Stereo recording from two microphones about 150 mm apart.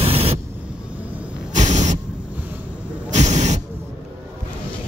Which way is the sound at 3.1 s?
50° right (ahead or behind).